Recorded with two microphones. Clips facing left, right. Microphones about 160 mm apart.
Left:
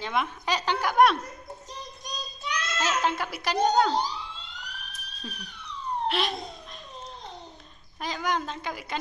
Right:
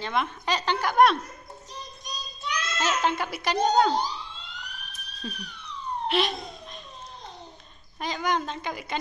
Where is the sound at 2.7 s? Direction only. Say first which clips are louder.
Right 1 dB; 5° left (ahead or behind).